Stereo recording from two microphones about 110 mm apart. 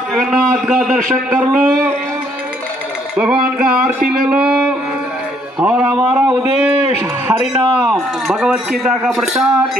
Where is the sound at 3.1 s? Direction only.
10° right (ahead or behind).